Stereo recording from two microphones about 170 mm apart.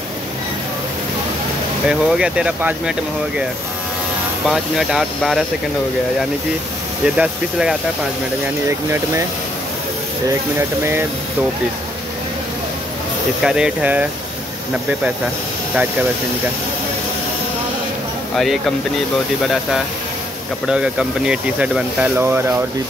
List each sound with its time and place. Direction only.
1.9 s speech: 5° right (ahead or behind)
4.5 s speech: centre (ahead or behind)
7.2 s speech: 5° right (ahead or behind)
8.6 s speech: 15° right (ahead or behind)
10.8 s speech: 15° right (ahead or behind)
13.4 s speech: 5° right (ahead or behind)
18.3 s speech: centre (ahead or behind)
20.6 s speech: 5° right (ahead or behind)